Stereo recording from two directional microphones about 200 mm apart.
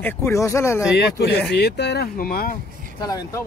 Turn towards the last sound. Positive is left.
turn(degrees=20)  # may be behind; listen again after turning